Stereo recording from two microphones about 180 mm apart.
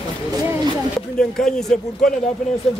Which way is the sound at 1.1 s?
5° left (ahead or behind).